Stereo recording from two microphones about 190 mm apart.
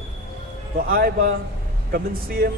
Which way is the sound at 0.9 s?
50° right (ahead or behind).